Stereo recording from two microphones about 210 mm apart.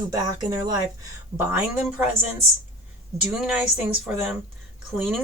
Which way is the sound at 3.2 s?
5° right (ahead or behind).